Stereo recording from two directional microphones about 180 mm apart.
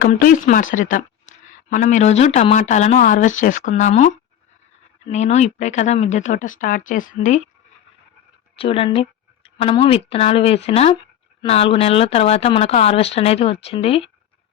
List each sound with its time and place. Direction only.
0.0 s a woman's voice: 50° left (ahead or behind)
8.5 s speech: 30° left (ahead or behind)